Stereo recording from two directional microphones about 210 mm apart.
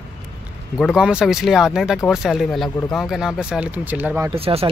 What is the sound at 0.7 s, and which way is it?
Speech, centre (ahead or behind).